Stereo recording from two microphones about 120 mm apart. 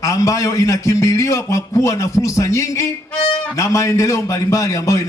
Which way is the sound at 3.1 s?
10° left (ahead or behind).